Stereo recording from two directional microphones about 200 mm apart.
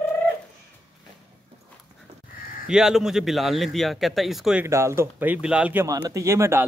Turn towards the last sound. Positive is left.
turn(degrees=-15)  # may be behind; listen again after turning